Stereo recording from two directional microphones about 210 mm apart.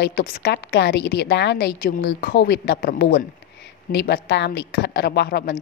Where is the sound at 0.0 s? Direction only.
45° left (ahead or behind).